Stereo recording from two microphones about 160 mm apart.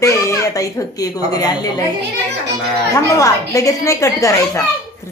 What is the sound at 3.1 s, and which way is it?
A woman's voice, 20° left (ahead or behind).